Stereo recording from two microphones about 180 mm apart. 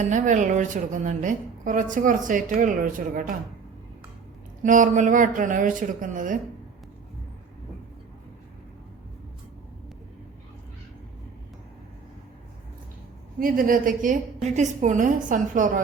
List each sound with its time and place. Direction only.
0.1 s a woman's voice: 45° right (ahead or behind)
4.6 s a woman's voice: 45° right (ahead or behind)
13.4 s a woman's voice: 50° right (ahead or behind)